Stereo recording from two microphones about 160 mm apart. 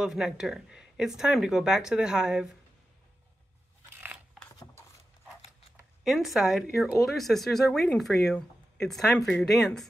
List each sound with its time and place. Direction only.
0.0 s speech: 5° right (ahead or behind)
4.5 s a sound: 15° left (ahead or behind)
6.0 s speech: centre (ahead or behind)